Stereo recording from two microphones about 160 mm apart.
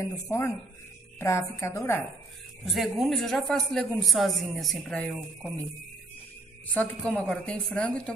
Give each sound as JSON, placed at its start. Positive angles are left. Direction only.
{"t": 0.0, "sound": "a man's voice", "side_deg": 20}
{"t": 2.6, "sound": "a man's voice", "side_deg": 0}
{"t": 6.7, "sound": "a woman's voice", "side_deg": 10}